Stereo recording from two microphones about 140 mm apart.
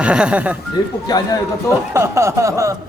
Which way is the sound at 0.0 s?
5° right (ahead or behind).